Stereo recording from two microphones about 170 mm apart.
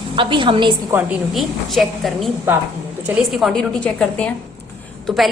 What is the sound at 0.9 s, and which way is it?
Speech, 10° right (ahead or behind).